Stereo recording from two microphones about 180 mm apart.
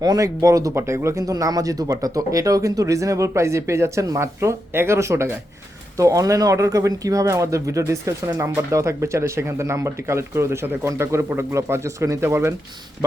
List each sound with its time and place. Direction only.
0.0 s speech: 20° right (ahead or behind)